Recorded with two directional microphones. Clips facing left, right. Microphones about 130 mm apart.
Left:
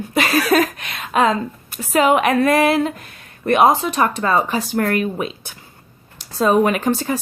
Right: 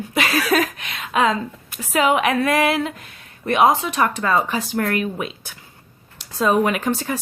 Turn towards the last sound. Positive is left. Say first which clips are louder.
# left 3 dB
turn(degrees=35)  # may be behind; listen again after turning